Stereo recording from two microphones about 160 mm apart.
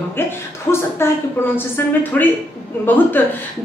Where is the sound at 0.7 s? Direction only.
15° left (ahead or behind).